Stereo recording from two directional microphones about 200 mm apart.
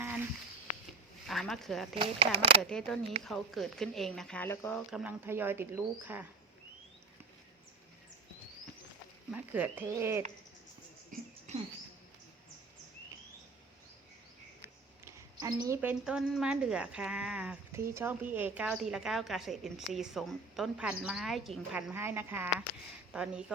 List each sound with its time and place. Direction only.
1.3 s speech: centre (ahead or behind)
2.0 s speech: 25° right (ahead or behind)
2.6 s a woman's voice: 5° left (ahead or behind)
4.9 s speech: 5° right (ahead or behind)
9.3 s speech: 10° right (ahead or behind)
11.1 s a sound: 45° right (ahead or behind)
11.5 s rodents: 35° right (ahead or behind)
15.0 s a woman's voice: 15° right (ahead or behind)